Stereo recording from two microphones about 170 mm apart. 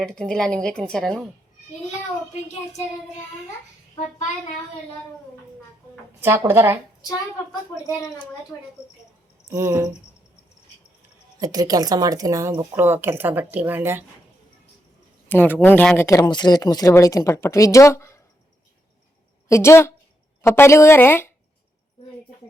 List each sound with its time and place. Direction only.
0.0 s speech: 5° left (ahead or behind)
6.1 s speech: 15° right (ahead or behind)
9.5 s speech: 15° right (ahead or behind)
11.3 s speech: 20° right (ahead or behind)
15.3 s a woman's voice: 10° left (ahead or behind)
16.0 s speech: 20° left (ahead or behind)
19.5 s a woman's voice: 15° left (ahead or behind)